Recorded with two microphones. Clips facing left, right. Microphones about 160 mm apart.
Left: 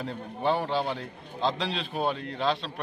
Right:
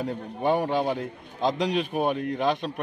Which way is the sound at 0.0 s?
15° right (ahead or behind).